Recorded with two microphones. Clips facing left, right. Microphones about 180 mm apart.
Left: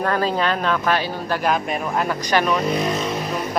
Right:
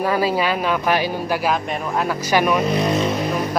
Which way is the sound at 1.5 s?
Centre (ahead or behind).